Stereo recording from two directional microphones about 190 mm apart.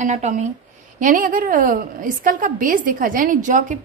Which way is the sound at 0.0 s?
35° right (ahead or behind).